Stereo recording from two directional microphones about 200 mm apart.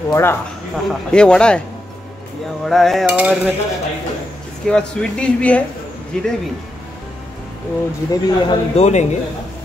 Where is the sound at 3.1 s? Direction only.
5° right (ahead or behind).